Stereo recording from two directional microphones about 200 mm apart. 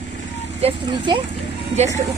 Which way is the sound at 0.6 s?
25° right (ahead or behind).